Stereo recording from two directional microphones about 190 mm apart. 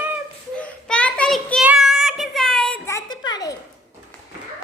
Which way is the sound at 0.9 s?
5° left (ahead or behind).